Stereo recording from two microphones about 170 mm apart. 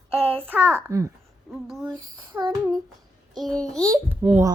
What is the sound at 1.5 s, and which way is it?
Speech, 5° right (ahead or behind).